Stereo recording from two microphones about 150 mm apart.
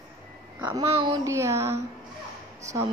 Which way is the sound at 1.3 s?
20° right (ahead or behind).